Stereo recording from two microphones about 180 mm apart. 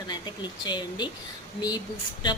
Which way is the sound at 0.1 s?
25° left (ahead or behind).